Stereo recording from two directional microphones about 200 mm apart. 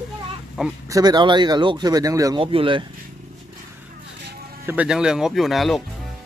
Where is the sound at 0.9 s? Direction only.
20° right (ahead or behind).